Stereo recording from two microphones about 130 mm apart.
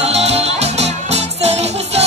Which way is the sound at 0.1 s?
55° right (ahead or behind).